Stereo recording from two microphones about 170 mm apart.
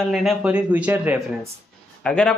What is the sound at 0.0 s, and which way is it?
Speech, centre (ahead or behind).